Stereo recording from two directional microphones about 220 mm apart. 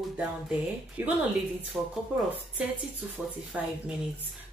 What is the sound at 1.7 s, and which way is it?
Speech, 5° left (ahead or behind).